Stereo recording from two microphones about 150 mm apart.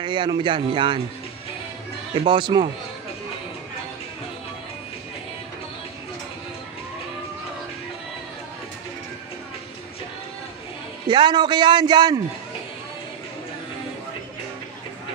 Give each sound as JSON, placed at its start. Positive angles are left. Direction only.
{"t": 0.0, "sound": "a man's voice", "side_deg": -30}
{"t": 2.2, "sound": "a man's voice", "side_deg": -35}
{"t": 11.1, "sound": "a man's voice", "side_deg": -30}